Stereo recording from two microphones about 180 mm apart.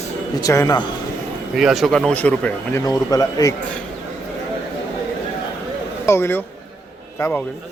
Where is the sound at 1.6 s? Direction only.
Centre (ahead or behind).